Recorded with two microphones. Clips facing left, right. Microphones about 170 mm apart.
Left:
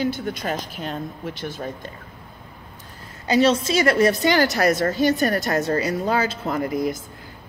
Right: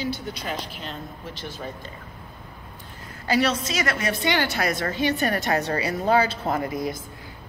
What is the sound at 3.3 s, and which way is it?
A woman's voice, 25° left (ahead or behind).